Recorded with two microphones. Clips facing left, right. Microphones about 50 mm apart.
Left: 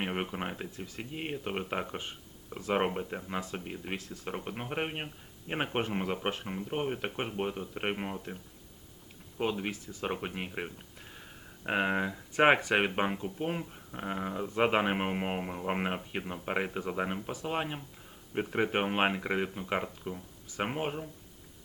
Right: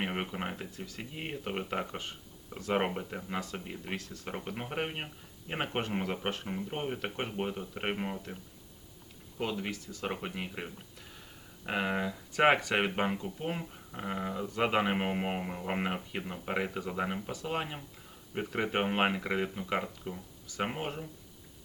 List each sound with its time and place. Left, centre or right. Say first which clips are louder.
0.0 s speech: left 1 dB; centre
9.4 s speech: left 2 dB; centre
14.3 s speech: left 2 dB; centre